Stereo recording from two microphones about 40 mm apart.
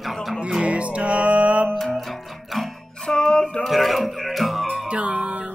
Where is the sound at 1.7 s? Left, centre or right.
Centre.